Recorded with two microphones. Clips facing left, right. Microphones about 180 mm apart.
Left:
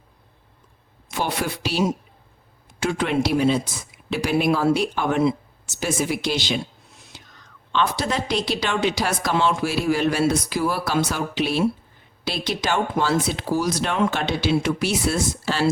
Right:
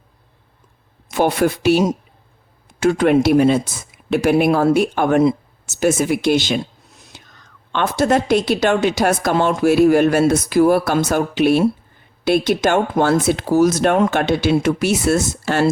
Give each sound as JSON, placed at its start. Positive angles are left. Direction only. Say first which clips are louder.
{"t": 1.1, "sound": "a woman's voice", "louder": "right 9 dB", "side_deg": -50}
{"t": 7.7, "sound": "a woman's voice", "louder": "right 7 dB", "side_deg": -50}